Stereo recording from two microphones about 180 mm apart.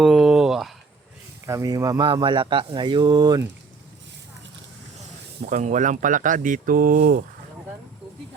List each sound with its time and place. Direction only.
0.0 s a sound: 5° right (ahead or behind)
1.5 s speech: 15° right (ahead or behind)
5.5 s speech: 40° right (ahead or behind); by 7.3 s 65° right (ahead or behind)